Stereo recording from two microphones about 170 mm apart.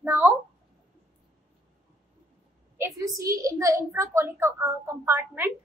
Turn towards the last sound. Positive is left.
turn(degrees=-15)  # may be behind; listen again after turning